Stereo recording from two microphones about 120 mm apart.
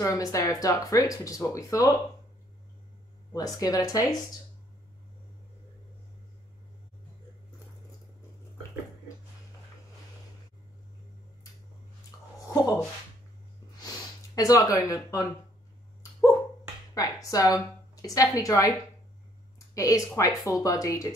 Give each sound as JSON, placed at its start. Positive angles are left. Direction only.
{"t": 0.0, "sound": "speech", "side_deg": 25}
{"t": 3.3, "sound": "speech", "side_deg": 30}
{"t": 12.4, "sound": "a sound", "side_deg": 25}
{"t": 16.0, "sound": "dog", "side_deg": 25}
{"t": 16.9, "sound": "a woman's voice", "side_deg": 30}